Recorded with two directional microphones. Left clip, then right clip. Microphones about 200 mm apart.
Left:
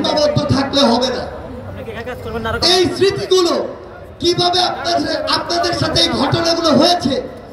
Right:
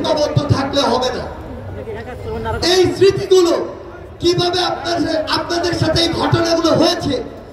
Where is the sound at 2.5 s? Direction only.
50° left (ahead or behind).